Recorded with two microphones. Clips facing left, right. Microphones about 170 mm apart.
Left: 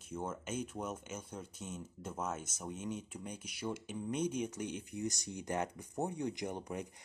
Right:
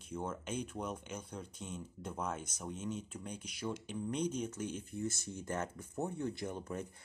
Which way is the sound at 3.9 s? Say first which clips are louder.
Even; 10° left (ahead or behind).